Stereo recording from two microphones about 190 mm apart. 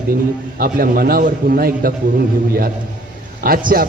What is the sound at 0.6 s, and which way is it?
A man's voice, 50° right (ahead or behind).